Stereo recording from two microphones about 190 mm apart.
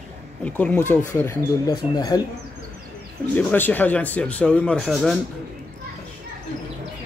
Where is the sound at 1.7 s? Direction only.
20° left (ahead or behind).